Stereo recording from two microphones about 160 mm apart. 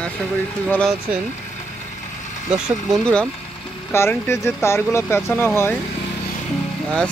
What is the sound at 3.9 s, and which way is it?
Speech, 15° left (ahead or behind).